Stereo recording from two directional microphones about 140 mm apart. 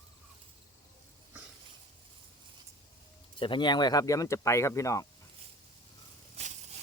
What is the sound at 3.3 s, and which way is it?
Speech, 35° left (ahead or behind).